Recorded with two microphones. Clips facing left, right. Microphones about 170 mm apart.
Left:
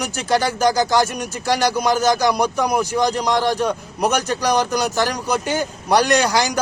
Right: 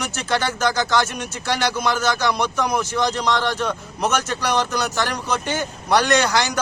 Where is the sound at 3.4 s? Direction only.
40° left (ahead or behind).